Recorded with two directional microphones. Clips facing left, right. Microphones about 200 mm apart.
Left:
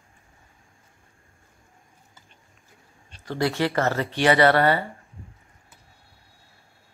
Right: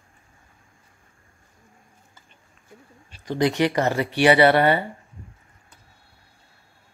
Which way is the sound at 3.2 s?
15° right (ahead or behind).